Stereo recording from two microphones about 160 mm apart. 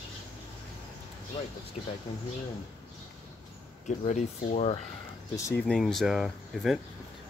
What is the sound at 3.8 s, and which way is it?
Speech, 50° left (ahead or behind).